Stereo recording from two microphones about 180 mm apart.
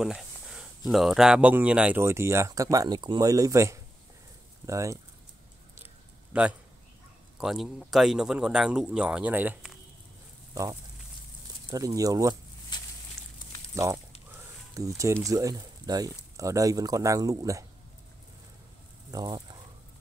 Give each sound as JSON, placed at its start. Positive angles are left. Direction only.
{"t": 0.0, "sound": "speech", "side_deg": -5}
{"t": 6.3, "sound": "speech", "side_deg": -5}
{"t": 10.5, "sound": "speech", "side_deg": -20}
{"t": 12.7, "sound": "a sound", "side_deg": 25}
{"t": 13.7, "sound": "speech", "side_deg": -15}
{"t": 19.0, "sound": "speech", "side_deg": -20}